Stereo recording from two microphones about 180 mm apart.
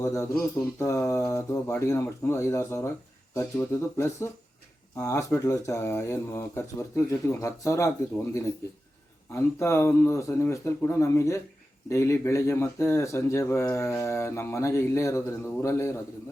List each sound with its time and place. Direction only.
0.0 s speech: 15° left (ahead or behind)
9.3 s speech: 15° left (ahead or behind)